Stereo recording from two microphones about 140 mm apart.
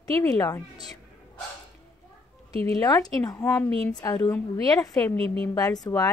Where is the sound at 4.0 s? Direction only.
25° left (ahead or behind).